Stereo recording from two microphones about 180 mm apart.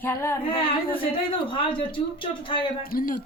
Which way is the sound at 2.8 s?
55° left (ahead or behind).